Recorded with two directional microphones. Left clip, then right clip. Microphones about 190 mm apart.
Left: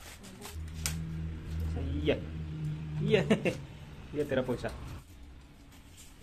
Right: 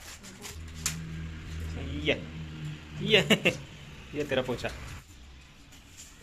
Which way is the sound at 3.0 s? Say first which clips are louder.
Right 5 dB; 5° left (ahead or behind).